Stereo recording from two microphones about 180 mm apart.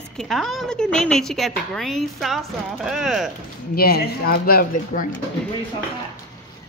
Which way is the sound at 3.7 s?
55° left (ahead or behind).